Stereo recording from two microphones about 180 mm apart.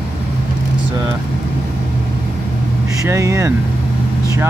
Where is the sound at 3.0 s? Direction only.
15° right (ahead or behind).